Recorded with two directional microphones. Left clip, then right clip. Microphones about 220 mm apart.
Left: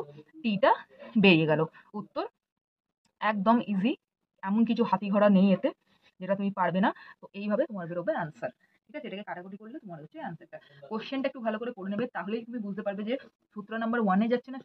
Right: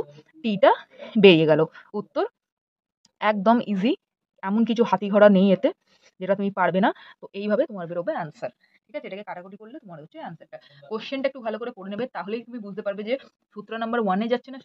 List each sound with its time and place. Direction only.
0.1 s a woman's voice: 35° right (ahead or behind)